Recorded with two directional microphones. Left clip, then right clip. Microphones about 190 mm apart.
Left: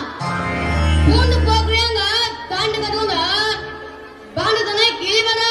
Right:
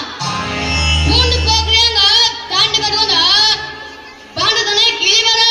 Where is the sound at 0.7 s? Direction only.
25° left (ahead or behind).